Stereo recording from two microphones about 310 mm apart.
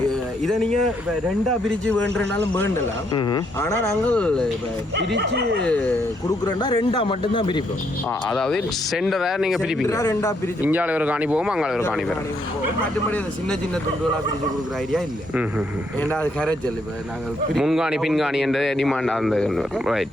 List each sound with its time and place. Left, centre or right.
0.1 s a sound: centre
1.9 s speech: centre
4.9 s speech: right
5.6 s speech: centre
6.4 s speech: centre
8.3 s speech: centre
9.8 s speech: centre
10.6 s speech: centre
14.9 s speech: centre